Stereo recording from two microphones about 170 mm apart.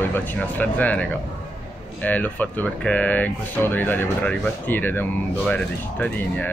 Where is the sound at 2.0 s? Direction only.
10° left (ahead or behind).